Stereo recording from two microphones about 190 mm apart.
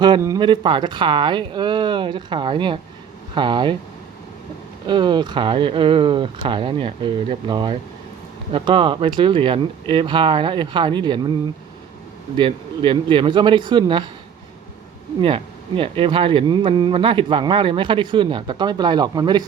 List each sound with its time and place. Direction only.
0.0 s speech: 20° right (ahead or behind)
4.9 s speech: 25° right (ahead or behind)
12.4 s speech: 25° right (ahead or behind)
15.2 s speech: 25° right (ahead or behind)